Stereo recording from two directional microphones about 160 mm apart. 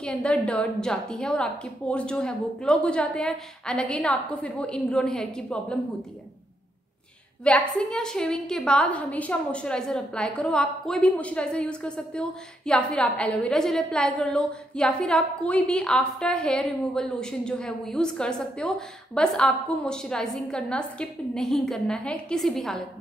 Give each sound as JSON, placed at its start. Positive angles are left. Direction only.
{"t": 0.0, "sound": "a woman's voice", "side_deg": 5}
{"t": 7.4, "sound": "a woman's voice", "side_deg": 5}